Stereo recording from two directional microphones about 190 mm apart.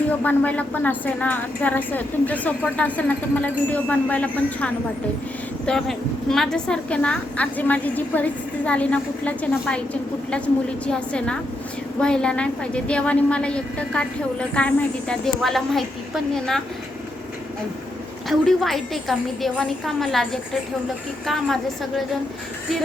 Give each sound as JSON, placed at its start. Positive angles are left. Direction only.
{"t": 0.2, "sound": "a woman's voice", "side_deg": 5}
{"t": 18.3, "sound": "a woman's voice", "side_deg": 0}